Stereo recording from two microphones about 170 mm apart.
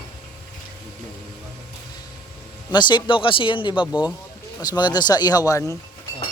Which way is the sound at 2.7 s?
25° left (ahead or behind).